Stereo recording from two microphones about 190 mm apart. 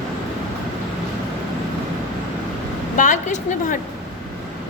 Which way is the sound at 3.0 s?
40° left (ahead or behind).